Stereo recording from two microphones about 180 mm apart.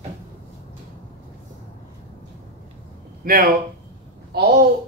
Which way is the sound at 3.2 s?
55° right (ahead or behind).